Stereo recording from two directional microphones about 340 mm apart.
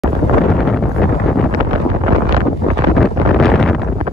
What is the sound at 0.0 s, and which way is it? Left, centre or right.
Wind noise, centre.